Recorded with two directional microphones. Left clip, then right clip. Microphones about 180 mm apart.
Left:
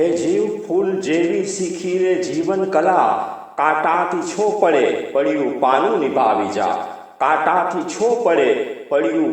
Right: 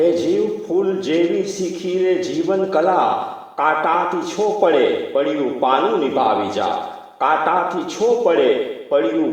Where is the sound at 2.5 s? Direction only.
40° left (ahead or behind).